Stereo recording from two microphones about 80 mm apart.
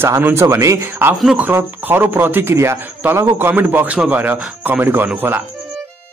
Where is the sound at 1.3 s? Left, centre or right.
Right.